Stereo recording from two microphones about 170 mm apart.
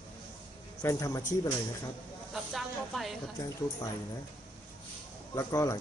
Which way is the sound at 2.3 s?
Centre (ahead or behind).